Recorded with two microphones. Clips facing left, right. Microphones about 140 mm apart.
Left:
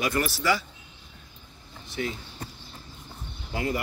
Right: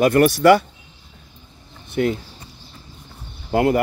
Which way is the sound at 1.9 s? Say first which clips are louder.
Right 11 dB; 55° right (ahead or behind).